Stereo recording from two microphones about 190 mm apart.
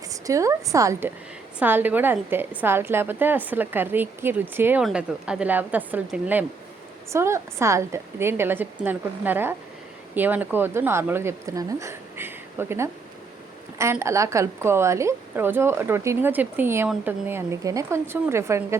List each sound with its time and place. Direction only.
0.1 s a woman's voice: 15° right (ahead or behind)